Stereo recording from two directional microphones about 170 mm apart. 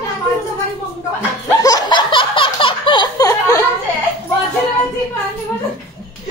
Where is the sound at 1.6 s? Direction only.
20° left (ahead or behind).